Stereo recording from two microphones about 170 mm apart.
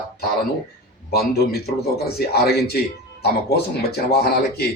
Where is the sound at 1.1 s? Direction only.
65° left (ahead or behind).